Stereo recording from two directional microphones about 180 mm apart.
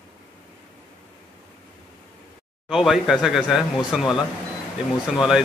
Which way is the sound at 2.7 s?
Centre (ahead or behind).